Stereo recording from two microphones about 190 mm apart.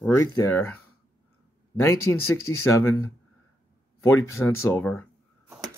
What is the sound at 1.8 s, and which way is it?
Speech, 15° left (ahead or behind).